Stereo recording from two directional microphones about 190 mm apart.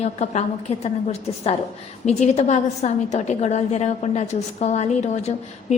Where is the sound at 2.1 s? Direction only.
35° left (ahead or behind).